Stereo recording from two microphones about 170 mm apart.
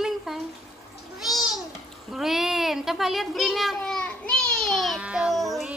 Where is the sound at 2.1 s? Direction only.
Centre (ahead or behind).